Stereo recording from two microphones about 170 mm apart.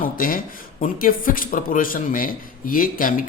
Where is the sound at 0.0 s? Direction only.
55° left (ahead or behind).